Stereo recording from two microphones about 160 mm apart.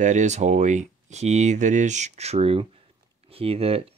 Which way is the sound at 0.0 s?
50° right (ahead or behind).